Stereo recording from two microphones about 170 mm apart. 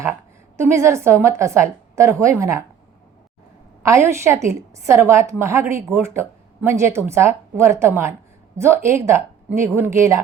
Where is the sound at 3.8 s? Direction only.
15° right (ahead or behind).